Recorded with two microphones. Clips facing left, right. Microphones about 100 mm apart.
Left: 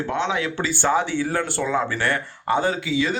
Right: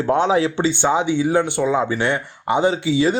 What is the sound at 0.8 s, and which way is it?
Speech, 20° right (ahead or behind).